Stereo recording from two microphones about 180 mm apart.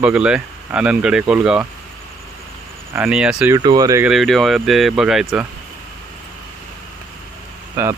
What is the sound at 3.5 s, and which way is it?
Speech, 20° right (ahead or behind).